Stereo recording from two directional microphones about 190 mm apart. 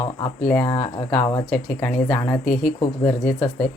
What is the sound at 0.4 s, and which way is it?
Speech, 10° left (ahead or behind).